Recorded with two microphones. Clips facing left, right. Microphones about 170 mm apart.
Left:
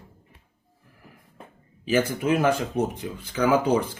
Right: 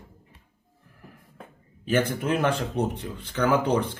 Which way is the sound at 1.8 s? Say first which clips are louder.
Left 1 dB; 5° left (ahead or behind).